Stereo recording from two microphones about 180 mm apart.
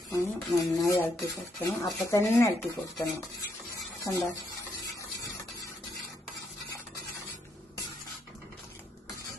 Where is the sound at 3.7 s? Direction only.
20° left (ahead or behind).